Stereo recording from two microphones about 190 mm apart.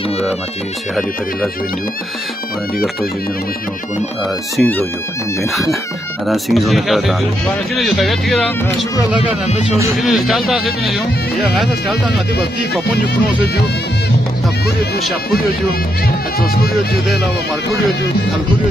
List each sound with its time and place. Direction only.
4.6 s speech: 10° left (ahead or behind)
6.2 s speech: centre (ahead or behind)
9.2 s speech: 35° left (ahead or behind)
9.9 s speech: centre (ahead or behind)